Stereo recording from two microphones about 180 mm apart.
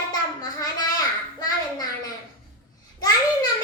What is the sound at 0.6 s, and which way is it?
A child's voice, 20° left (ahead or behind).